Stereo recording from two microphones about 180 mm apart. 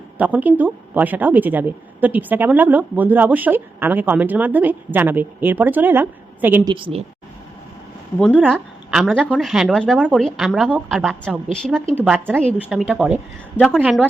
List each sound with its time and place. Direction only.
0.2 s a woman's voice: 10° right (ahead or behind)
6.7 s a woman's voice: 30° right (ahead or behind)
8.4 s a woman's voice: centre (ahead or behind)
12.0 s a woman's voice: 5° right (ahead or behind)